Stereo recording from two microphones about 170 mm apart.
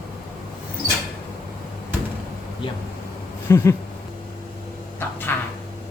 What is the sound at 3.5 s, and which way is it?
Speech, 15° left (ahead or behind).